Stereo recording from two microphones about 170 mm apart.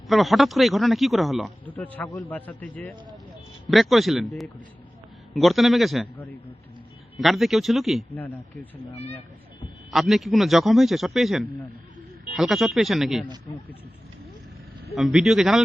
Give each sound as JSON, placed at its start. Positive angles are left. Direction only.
{"t": 0.1, "sound": "a man's voice", "side_deg": 0}
{"t": 7.2, "sound": "speech", "side_deg": 0}
{"t": 8.1, "sound": "a man's voice", "side_deg": 10}
{"t": 9.9, "sound": "speech", "side_deg": 0}
{"t": 14.9, "sound": "speech", "side_deg": 0}